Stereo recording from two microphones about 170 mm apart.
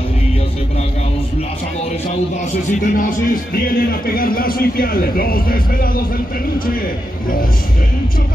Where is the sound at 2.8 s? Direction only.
55° left (ahead or behind).